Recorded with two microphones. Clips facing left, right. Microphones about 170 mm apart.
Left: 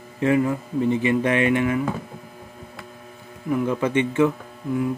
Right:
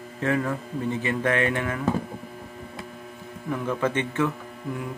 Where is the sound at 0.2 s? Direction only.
15° left (ahead or behind).